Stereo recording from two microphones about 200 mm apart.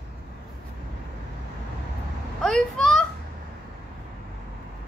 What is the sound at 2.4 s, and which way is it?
Speech, 5° left (ahead or behind).